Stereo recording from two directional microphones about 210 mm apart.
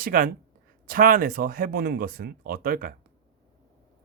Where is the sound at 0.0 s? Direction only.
45° right (ahead or behind).